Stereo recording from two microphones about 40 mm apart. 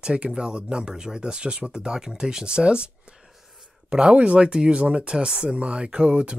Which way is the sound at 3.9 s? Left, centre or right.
Right.